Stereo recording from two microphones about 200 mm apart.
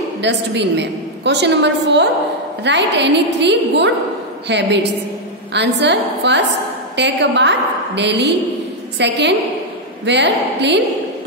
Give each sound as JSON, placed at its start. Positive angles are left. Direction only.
{"t": 0.2, "sound": "a woman's voice", "side_deg": -60}